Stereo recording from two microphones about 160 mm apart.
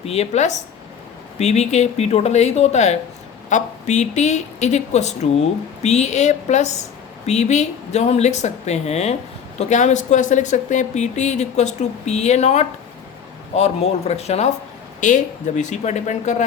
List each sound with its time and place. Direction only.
0.0 s speech: 40° left (ahead or behind)